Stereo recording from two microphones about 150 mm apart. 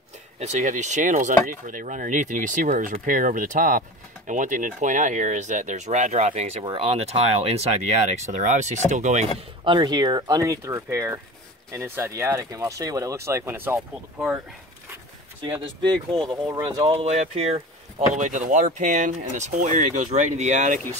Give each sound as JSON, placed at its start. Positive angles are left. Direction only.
{"t": 0.4, "sound": "speech", "side_deg": -50}
{"t": 9.7, "sound": "speech", "side_deg": -30}
{"t": 13.7, "sound": "speech", "side_deg": -5}
{"t": 15.4, "sound": "speech", "side_deg": -30}
{"t": 18.1, "sound": "speech", "side_deg": -55}